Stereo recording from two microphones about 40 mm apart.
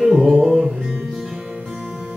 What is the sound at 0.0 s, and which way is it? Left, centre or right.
Music, centre.